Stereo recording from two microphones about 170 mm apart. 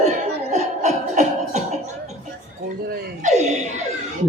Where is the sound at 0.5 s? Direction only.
45° right (ahead or behind).